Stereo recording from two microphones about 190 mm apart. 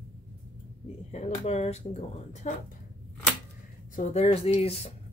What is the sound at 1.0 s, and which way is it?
Speech, 35° left (ahead or behind).